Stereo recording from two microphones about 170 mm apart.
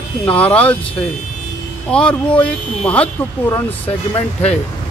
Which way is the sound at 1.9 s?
5° left (ahead or behind).